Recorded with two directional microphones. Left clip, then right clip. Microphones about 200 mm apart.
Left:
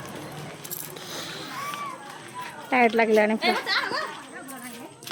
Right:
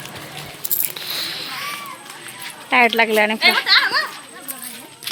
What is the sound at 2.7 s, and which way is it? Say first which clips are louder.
Speech: right 5 dB; 5° left (ahead or behind).